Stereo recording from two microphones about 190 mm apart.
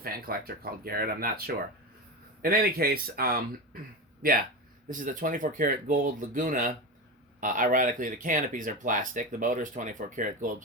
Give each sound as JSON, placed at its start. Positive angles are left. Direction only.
{"t": 0.0, "sound": "speech", "side_deg": -50}